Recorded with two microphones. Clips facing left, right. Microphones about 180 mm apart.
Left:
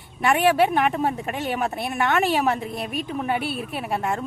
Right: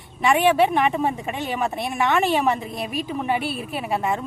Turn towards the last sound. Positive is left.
turn(degrees=0)  # may be behind; listen again after turning